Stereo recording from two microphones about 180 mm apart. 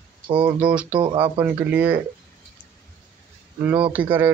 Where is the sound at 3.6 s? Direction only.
10° right (ahead or behind).